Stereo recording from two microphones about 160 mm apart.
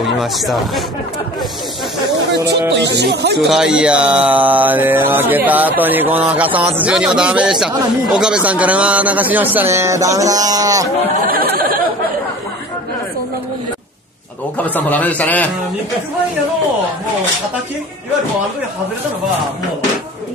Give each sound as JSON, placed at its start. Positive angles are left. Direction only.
{"t": 0.2, "sound": "speech", "side_deg": 0}
{"t": 2.3, "sound": "music", "side_deg": -90}
{"t": 3.3, "sound": "mantra", "side_deg": 0}
{"t": 9.6, "sound": "speech", "side_deg": -15}
{"t": 11.1, "sound": "a sound", "side_deg": -65}
{"t": 14.6, "sound": "a man's voice", "side_deg": 10}